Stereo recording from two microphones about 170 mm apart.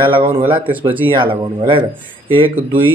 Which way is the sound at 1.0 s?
30° right (ahead or behind).